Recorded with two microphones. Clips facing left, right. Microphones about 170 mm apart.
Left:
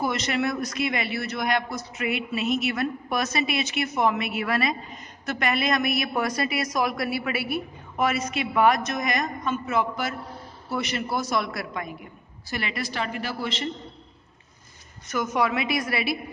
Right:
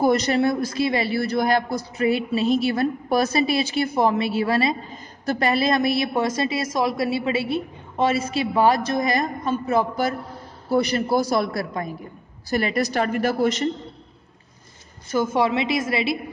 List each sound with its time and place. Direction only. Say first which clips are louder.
0.0 s a woman's voice: right 7 dB; 35° right (ahead or behind)
15.0 s a woman's voice: right 4 dB; 30° right (ahead or behind)